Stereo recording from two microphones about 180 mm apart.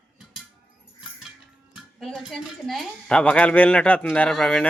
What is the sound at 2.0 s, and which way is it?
A woman's voice, centre (ahead or behind).